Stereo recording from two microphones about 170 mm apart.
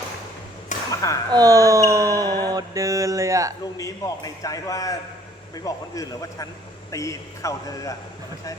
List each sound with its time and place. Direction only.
0.9 s a sound: 20° left (ahead or behind)
1.3 s mantra: 20° right (ahead or behind)
3.8 s a man's voice: 20° left (ahead or behind)